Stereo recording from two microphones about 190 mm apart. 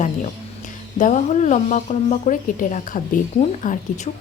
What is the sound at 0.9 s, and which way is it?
A woman's voice, 40° left (ahead or behind).